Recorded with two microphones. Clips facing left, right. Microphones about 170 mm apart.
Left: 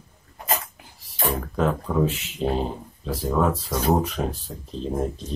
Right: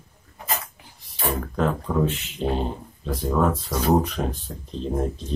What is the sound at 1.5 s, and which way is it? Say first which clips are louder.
Speech: left 1 dB; centre (ahead or behind).